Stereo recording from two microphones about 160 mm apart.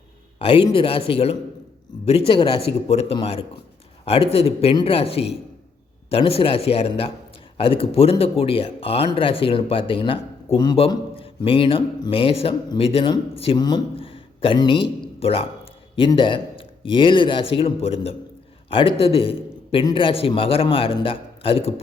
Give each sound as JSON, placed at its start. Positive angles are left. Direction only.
{"t": 0.3, "sound": "speech", "side_deg": 35}